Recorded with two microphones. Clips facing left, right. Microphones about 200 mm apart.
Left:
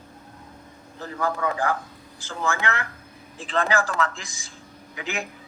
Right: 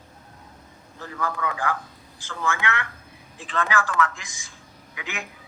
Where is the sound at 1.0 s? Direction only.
35° left (ahead or behind).